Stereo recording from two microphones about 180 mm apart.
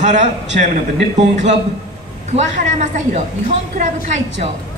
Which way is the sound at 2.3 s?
40° right (ahead or behind).